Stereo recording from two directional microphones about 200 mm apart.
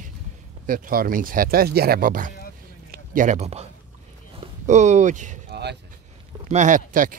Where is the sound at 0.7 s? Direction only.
45° right (ahead or behind).